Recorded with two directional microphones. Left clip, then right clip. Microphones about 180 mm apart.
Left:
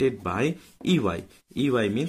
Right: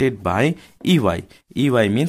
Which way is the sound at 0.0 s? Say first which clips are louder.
Right 6 dB; 40° right (ahead or behind).